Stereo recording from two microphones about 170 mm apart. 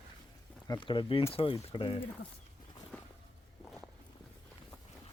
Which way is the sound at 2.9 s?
5° left (ahead or behind).